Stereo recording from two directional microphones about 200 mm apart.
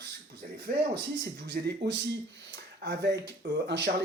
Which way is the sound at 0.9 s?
55° right (ahead or behind).